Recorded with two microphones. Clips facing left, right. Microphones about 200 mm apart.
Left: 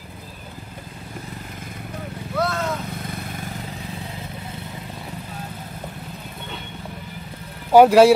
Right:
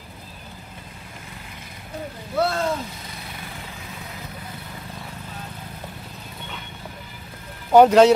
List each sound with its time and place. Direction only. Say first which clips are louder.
2.3 s vehicle: right 2 dB; 30° right (ahead or behind)
3.1 s vehicle: left 6 dB; 45° left (ahead or behind)
7.7 s speech: left 1 dB; 10° left (ahead or behind)